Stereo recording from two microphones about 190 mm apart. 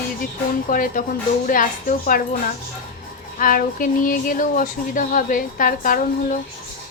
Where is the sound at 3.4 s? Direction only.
45° left (ahead or behind).